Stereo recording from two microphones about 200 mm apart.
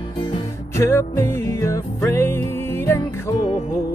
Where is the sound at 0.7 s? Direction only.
15° left (ahead or behind).